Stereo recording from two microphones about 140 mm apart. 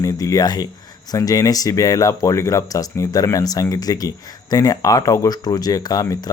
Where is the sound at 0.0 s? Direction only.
25° left (ahead or behind).